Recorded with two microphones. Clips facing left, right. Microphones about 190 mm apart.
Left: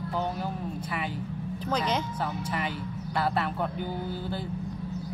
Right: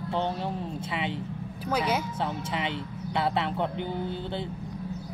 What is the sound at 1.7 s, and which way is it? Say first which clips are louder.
Speech: right 1 dB; 10° right (ahead or behind).